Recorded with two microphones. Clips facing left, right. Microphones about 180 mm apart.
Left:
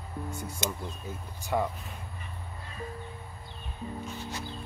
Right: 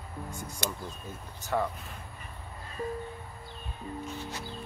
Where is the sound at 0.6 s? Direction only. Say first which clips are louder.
Left 1 dB; 20° left (ahead or behind).